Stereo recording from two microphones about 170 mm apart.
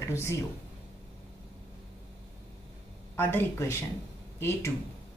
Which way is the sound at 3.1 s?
10° left (ahead or behind).